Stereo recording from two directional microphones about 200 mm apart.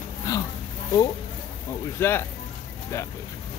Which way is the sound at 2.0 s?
10° left (ahead or behind).